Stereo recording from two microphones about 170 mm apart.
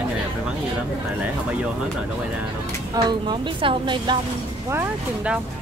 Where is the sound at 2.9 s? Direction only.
25° right (ahead or behind).